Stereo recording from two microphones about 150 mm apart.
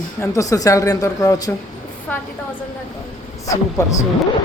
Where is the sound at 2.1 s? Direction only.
10° left (ahead or behind).